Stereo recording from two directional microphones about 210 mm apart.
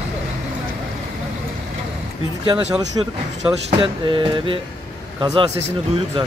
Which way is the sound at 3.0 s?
25° right (ahead or behind).